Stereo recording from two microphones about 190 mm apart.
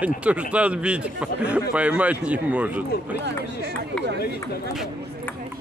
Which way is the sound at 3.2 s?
65° right (ahead or behind).